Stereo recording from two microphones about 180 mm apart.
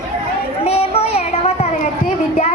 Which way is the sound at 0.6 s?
35° left (ahead or behind).